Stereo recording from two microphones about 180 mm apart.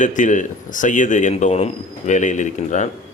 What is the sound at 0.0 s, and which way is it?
Speech, 45° left (ahead or behind).